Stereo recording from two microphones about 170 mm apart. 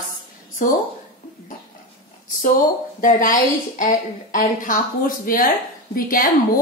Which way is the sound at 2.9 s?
50° left (ahead or behind).